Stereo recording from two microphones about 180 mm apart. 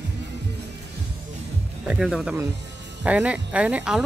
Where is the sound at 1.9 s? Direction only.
Centre (ahead or behind).